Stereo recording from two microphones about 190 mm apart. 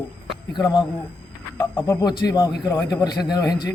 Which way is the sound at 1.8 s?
20° left (ahead or behind).